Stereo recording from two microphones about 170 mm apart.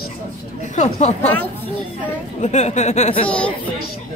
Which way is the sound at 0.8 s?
45° left (ahead or behind).